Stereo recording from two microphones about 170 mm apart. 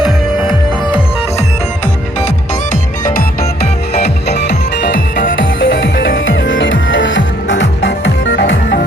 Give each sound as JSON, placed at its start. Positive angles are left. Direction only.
{"t": 0.0, "sound": "music", "side_deg": 25}
{"t": 3.1, "sound": "music", "side_deg": 60}
{"t": 4.0, "sound": "music", "side_deg": 85}